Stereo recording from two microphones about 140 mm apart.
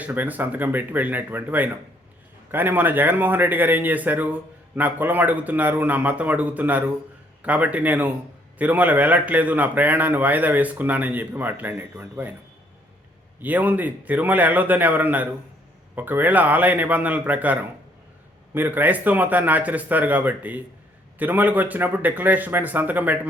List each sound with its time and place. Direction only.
0.0 s a man's voice: 10° right (ahead or behind)
13.4 s a man's voice: 10° right (ahead or behind)